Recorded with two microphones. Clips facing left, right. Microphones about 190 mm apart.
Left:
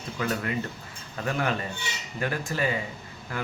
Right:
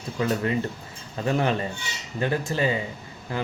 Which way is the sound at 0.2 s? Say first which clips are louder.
Right 5 dB; 30° right (ahead or behind).